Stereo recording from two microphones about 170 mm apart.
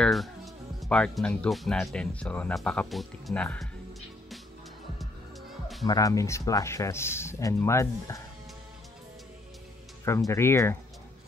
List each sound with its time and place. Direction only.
0.0 s speech: centre (ahead or behind)
5.9 s speech: 20° left (ahead or behind)
10.0 s speech: 15° left (ahead or behind)